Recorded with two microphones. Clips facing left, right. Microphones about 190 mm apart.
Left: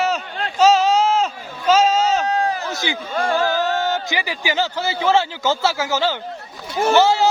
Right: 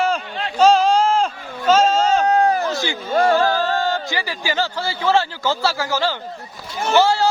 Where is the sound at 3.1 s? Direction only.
40° right (ahead or behind).